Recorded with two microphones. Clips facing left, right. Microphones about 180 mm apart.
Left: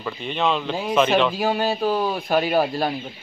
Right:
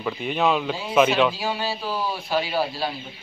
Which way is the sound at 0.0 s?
5° right (ahead or behind).